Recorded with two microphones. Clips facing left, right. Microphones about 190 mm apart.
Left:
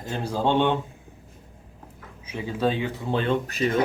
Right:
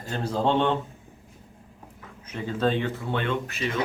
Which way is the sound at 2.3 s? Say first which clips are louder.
Even; 10° left (ahead or behind).